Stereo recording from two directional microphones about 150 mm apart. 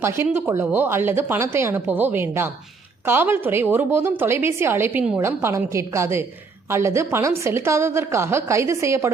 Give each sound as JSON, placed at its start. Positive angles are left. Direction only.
{"t": 0.0, "sound": "a woman's voice", "side_deg": -15}